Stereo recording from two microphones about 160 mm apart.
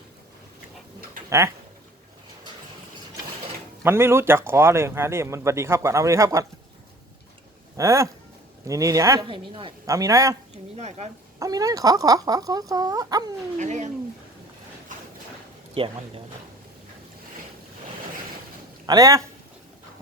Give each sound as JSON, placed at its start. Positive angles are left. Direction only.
{"t": 3.8, "sound": "speech", "side_deg": -15}
{"t": 7.8, "sound": "speech", "side_deg": -20}
{"t": 9.2, "sound": "speech", "side_deg": -30}
{"t": 9.8, "sound": "speech", "side_deg": -20}
{"t": 10.5, "sound": "speech", "side_deg": -45}
{"t": 11.3, "sound": "speech", "side_deg": -20}
{"t": 13.6, "sound": "speech", "side_deg": -50}
{"t": 15.7, "sound": "speech", "side_deg": -35}
{"t": 18.9, "sound": "speech", "side_deg": -20}